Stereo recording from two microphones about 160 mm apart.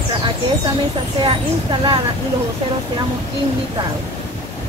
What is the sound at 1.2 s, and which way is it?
Speech, 30° right (ahead or behind).